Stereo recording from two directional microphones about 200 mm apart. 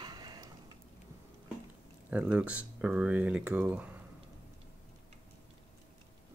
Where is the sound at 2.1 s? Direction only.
5° right (ahead or behind).